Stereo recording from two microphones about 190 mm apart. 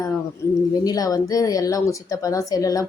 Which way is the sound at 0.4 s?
15° left (ahead or behind).